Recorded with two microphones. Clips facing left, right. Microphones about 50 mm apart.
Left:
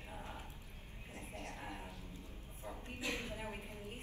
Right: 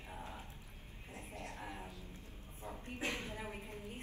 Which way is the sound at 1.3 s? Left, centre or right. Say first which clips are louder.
Even; left.